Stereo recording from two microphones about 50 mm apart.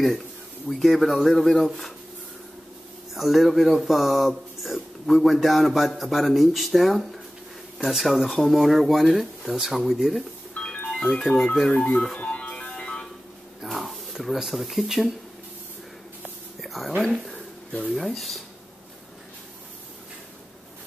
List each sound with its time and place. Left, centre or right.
0.7 s speech: centre
3.2 s speech: centre
10.6 s music: centre
11.0 s speech: centre
11.7 s speech: left
12.2 s music: left
13.6 s a sound: centre
16.6 s a sound: centre
17.9 s speech: centre